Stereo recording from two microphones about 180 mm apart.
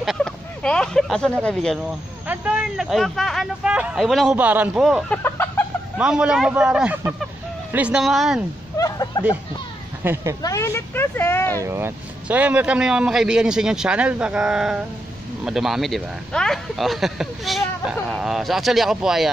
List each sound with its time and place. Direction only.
0.0 s speech: centre (ahead or behind)
8.7 s a sound: 20° left (ahead or behind)
10.0 s speech: 10° right (ahead or behind)
10.4 s speech: 15° left (ahead or behind)
11.5 s speech: 15° right (ahead or behind)